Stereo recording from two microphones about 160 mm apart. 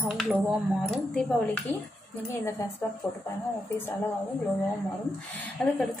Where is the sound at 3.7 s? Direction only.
10° left (ahead or behind).